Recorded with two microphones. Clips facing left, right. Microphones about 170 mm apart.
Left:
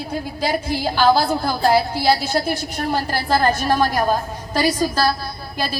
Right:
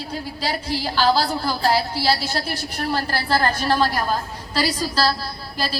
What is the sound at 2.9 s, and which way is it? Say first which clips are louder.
Speech: left 2 dB; 15° left (ahead or behind).